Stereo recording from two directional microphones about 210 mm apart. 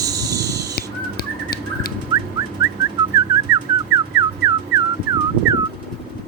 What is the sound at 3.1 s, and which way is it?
Whistling, 15° right (ahead or behind).